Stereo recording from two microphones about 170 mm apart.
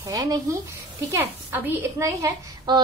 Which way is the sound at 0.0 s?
20° right (ahead or behind).